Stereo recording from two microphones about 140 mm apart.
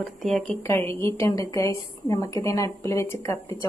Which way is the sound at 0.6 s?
20° left (ahead or behind).